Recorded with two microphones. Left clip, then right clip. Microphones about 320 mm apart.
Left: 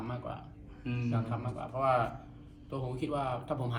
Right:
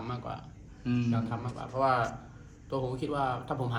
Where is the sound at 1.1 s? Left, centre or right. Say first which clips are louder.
Right 2 dB; centre.